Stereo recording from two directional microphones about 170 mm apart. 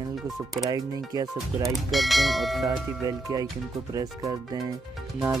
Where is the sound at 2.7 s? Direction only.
20° right (ahead or behind).